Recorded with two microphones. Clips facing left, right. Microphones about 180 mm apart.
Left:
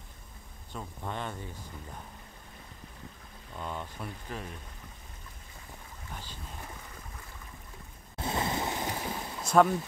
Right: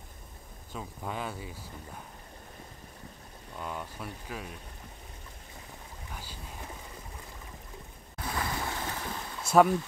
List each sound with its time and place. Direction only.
0.7 s speech: 5° right (ahead or behind)
3.5 s speech: 5° right (ahead or behind)
8.2 s boat: 25° left (ahead or behind)
9.4 s a sound: 10° right (ahead or behind)